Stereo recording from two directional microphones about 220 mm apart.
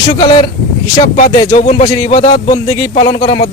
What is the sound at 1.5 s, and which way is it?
Music, 30° left (ahead or behind).